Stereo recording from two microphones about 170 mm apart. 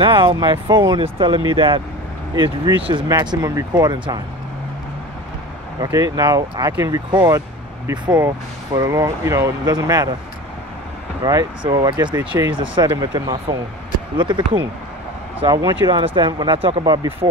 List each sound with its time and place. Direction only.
0.0 s speech: 30° right (ahead or behind)
5.8 s speech: 20° right (ahead or behind)
11.2 s speech: 20° right (ahead or behind)